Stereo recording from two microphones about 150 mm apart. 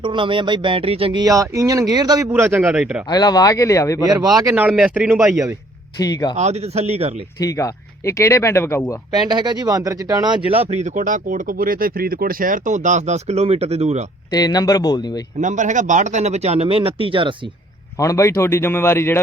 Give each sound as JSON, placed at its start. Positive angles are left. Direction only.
{"t": 0.0, "sound": "speech", "side_deg": -35}
{"t": 1.2, "sound": "speech", "side_deg": -20}
{"t": 2.3, "sound": "speech", "side_deg": -15}
{"t": 3.1, "sound": "speech", "side_deg": 25}
{"t": 4.0, "sound": "speech", "side_deg": -25}
{"t": 4.5, "sound": "speech", "side_deg": -5}
{"t": 6.0, "sound": "speech", "side_deg": 25}
{"t": 6.3, "sound": "speech", "side_deg": -45}
{"t": 7.3, "sound": "speech", "side_deg": 20}
{"t": 9.3, "sound": "speech", "side_deg": -30}
{"t": 14.3, "sound": "speech", "side_deg": 25}
{"t": 15.4, "sound": "speech", "side_deg": -55}
{"t": 17.9, "sound": "speech", "side_deg": 20}